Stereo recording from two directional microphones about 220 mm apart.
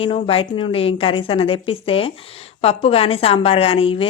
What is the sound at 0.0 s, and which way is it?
A woman's voice, 25° left (ahead or behind).